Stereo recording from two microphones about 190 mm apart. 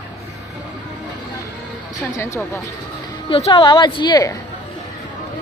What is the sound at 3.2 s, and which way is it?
A woman's voice, 30° left (ahead or behind).